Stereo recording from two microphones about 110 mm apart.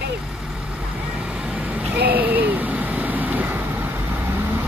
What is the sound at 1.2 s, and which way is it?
Vehicle, 10° right (ahead or behind).